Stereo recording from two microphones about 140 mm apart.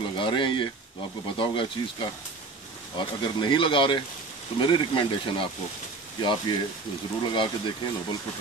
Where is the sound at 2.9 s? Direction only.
35° left (ahead or behind).